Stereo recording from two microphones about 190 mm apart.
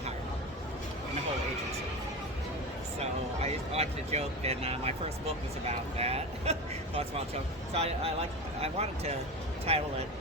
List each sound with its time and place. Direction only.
3.0 s speech: 35° right (ahead or behind)